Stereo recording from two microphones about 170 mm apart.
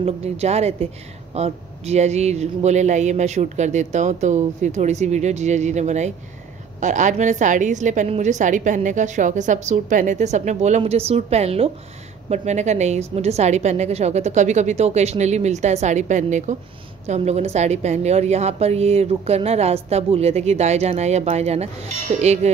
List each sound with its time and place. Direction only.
0.0 s a woman's voice: 40° right (ahead or behind)